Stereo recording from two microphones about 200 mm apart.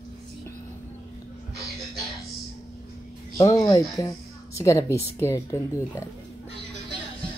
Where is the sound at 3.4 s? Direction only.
15° left (ahead or behind).